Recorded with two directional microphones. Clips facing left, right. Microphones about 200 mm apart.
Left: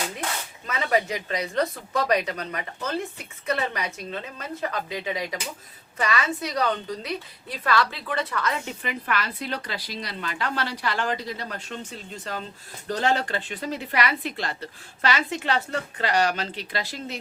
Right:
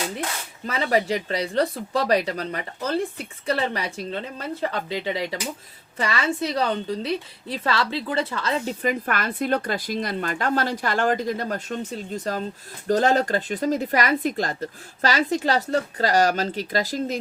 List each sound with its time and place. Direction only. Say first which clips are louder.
0.7 s a woman's voice: right 3 dB; 30° right (ahead or behind)